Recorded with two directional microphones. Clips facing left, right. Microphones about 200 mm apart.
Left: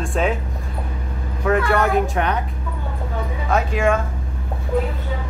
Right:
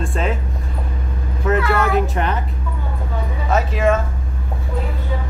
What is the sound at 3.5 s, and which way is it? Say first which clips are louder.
Speech: right 1 dB; centre (ahead or behind).